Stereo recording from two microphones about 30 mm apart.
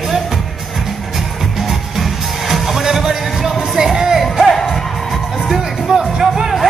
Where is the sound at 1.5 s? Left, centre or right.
Centre.